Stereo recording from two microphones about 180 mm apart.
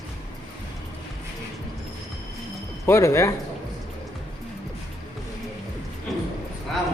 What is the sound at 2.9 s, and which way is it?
Speech, 15° left (ahead or behind).